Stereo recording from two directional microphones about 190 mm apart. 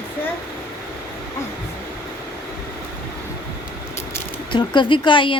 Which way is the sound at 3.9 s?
15° left (ahead or behind).